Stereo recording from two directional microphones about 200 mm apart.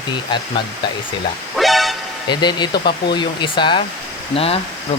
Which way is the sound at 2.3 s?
20° left (ahead or behind).